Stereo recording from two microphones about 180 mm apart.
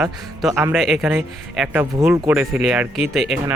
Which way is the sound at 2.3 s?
5° right (ahead or behind).